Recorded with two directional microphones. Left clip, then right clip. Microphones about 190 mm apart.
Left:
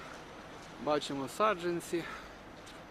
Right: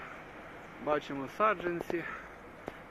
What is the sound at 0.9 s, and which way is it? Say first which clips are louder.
Speech: even; 15° left (ahead or behind).